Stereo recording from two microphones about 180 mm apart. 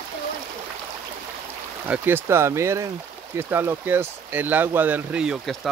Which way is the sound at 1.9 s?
10° right (ahead or behind).